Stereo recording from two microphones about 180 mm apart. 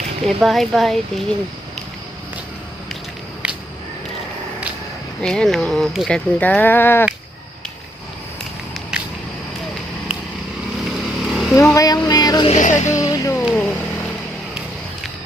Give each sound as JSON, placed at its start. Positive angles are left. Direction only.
{"t": 0.3, "sound": "speech", "side_deg": 0}
{"t": 3.4, "sound": "whip", "side_deg": -5}
{"t": 5.2, "sound": "speech", "side_deg": 5}
{"t": 10.8, "sound": "vehicle", "side_deg": 0}
{"t": 11.5, "sound": "a sound", "side_deg": 15}
{"t": 12.5, "sound": "music", "side_deg": 45}
{"t": 13.0, "sound": "music", "side_deg": 20}
{"t": 13.4, "sound": "a sound", "side_deg": 5}